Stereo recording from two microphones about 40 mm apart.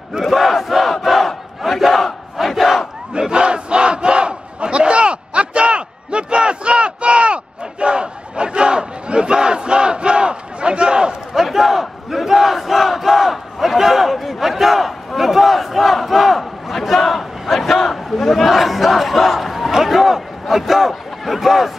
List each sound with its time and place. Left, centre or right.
0.3 s crowd: centre
3.1 s battle cry: right
11.3 s crowd: centre